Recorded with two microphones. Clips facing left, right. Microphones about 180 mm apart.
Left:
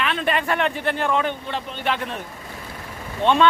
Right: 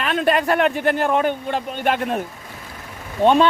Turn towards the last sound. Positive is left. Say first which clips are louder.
# right 4 dB
turn(degrees=-40)  # may be behind; listen again after turning